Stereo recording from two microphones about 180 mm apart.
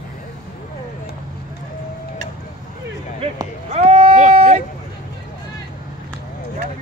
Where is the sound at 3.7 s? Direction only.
35° right (ahead or behind).